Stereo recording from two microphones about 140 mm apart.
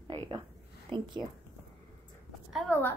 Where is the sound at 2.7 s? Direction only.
15° left (ahead or behind).